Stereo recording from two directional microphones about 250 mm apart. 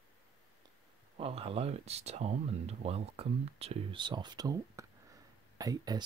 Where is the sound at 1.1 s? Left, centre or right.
Right.